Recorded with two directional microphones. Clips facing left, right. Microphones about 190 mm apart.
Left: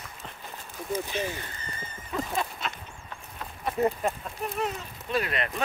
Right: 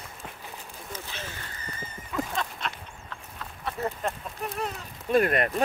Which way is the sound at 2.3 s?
5° left (ahead or behind).